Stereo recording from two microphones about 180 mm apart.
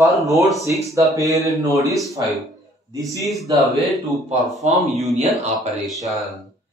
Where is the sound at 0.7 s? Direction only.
15° right (ahead or behind).